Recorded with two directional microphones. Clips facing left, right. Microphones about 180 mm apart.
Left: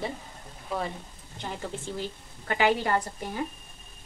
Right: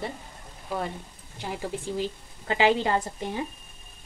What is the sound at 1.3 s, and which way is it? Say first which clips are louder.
Speech: right 3 dB; 10° right (ahead or behind).